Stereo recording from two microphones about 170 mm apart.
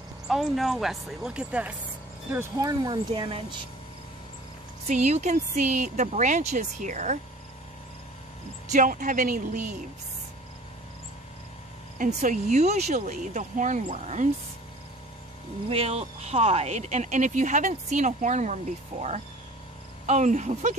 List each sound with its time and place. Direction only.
0.3 s speech: centre (ahead or behind)
2.3 s speech: 20° right (ahead or behind)
4.8 s speech: 45° right (ahead or behind)
8.6 s speech: 50° right (ahead or behind)
12.2 s speech: 45° right (ahead or behind)
15.7 s speech: 40° right (ahead or behind)